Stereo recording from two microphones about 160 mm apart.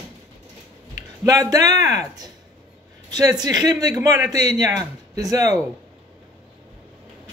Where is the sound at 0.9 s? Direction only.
20° right (ahead or behind).